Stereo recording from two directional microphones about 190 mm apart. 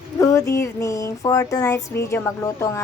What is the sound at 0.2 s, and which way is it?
A woman's voice, 15° left (ahead or behind).